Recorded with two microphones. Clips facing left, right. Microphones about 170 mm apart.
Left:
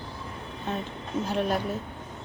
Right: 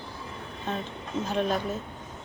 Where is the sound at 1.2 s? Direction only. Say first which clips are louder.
Even; 10° left (ahead or behind).